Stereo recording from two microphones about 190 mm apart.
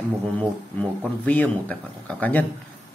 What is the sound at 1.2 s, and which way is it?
Speech, 10° left (ahead or behind).